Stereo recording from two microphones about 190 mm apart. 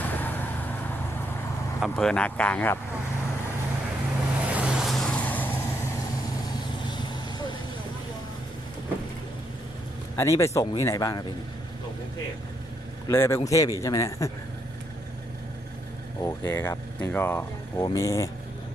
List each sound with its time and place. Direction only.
0.0 s vehicle: 10° left (ahead or behind)
1.8 s speech: 5° left (ahead or behind)
4.5 s vehicle: 5° right (ahead or behind)
6.8 s vehicle: 25° left (ahead or behind)
10.2 s speech: 15° left (ahead or behind)
13.1 s speech: 15° left (ahead or behind)
16.2 s speech: 10° left (ahead or behind)